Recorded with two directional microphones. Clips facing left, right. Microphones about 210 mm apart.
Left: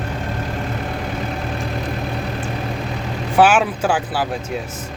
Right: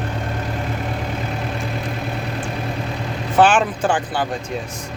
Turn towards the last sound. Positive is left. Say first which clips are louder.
# even
turn(degrees=5)  # may be behind; listen again after turning